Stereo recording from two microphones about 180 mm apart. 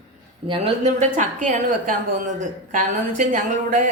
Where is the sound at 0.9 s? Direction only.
45° right (ahead or behind).